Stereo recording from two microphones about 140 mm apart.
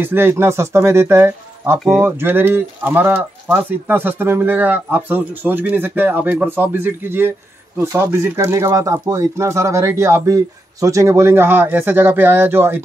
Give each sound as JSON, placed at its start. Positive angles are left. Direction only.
{"t": 0.0, "sound": "speech", "side_deg": -15}